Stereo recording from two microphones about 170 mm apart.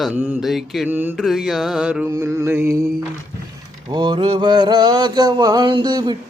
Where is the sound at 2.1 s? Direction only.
15° right (ahead or behind).